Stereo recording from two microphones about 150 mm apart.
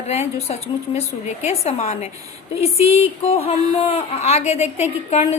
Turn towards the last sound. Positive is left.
turn(degrees=45)  # may be behind; listen again after turning